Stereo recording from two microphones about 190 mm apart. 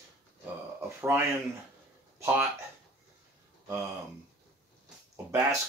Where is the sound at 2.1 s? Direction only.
10° right (ahead or behind).